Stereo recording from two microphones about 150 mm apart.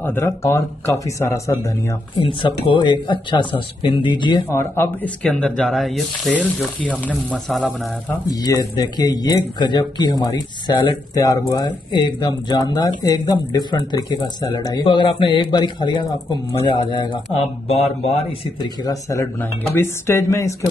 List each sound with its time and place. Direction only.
0.0 s speech: 15° left (ahead or behind)
2.1 s speech: 35° left (ahead or behind)
4.5 s speech: 15° left (ahead or behind)
8.3 s speech: 25° left (ahead or behind)
17.6 s a man's voice: 45° left (ahead or behind)
18.6 s speech: 25° left (ahead or behind)